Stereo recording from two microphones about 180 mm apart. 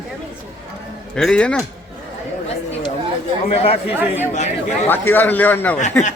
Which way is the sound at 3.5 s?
35° left (ahead or behind).